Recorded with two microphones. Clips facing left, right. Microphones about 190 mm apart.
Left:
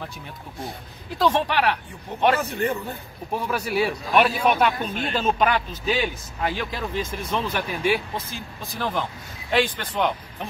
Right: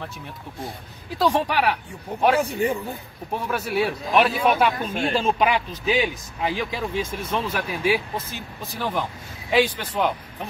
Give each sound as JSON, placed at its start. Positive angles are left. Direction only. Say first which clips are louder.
{"t": 1.1, "sound": "a man's voice", "louder": "even", "side_deg": -10}